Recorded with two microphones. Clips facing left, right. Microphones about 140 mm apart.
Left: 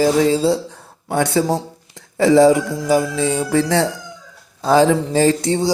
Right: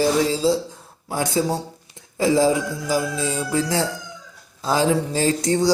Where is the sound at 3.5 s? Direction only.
70° left (ahead or behind).